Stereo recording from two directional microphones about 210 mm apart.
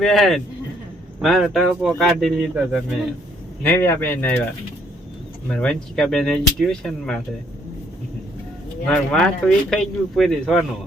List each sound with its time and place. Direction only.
0.0 s speech: centre (ahead or behind)
3.6 s speech: 10° left (ahead or behind)
5.5 s speech: 5° left (ahead or behind)
8.9 s speech: centre (ahead or behind)